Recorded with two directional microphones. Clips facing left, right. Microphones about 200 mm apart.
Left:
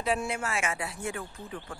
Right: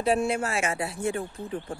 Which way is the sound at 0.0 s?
35° right (ahead or behind).